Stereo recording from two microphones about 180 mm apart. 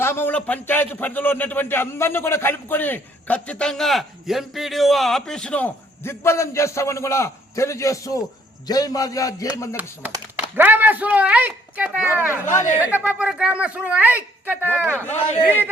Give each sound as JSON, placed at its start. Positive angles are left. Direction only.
{"t": 0.0, "sound": "a man's voice", "side_deg": 15}
{"t": 10.1, "sound": "a man's voice", "side_deg": -15}
{"t": 12.3, "sound": "speech", "side_deg": 15}
{"t": 12.8, "sound": "speech", "side_deg": -10}
{"t": 15.1, "sound": "speech", "side_deg": 10}
{"t": 15.4, "sound": "speech", "side_deg": -10}